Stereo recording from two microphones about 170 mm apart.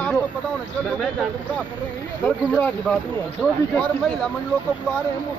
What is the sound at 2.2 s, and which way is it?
Speech, 5° left (ahead or behind).